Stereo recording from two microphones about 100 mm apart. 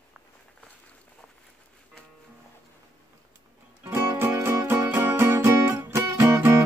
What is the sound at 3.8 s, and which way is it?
Music, 25° right (ahead or behind).